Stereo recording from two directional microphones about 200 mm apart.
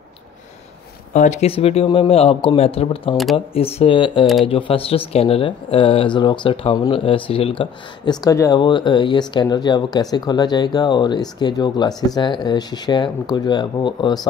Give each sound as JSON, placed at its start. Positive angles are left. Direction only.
{"t": 1.1, "sound": "speech", "side_deg": 35}